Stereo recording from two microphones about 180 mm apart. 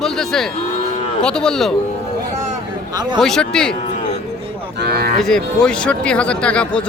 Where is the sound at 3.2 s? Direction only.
5° left (ahead or behind).